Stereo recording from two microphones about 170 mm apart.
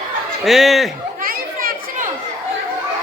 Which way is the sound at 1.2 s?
60° right (ahead or behind).